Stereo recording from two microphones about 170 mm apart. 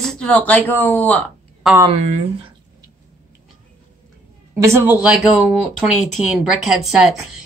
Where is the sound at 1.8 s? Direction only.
40° right (ahead or behind).